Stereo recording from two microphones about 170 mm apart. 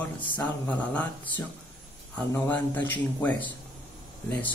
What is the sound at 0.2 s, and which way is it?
Speech, 30° left (ahead or behind).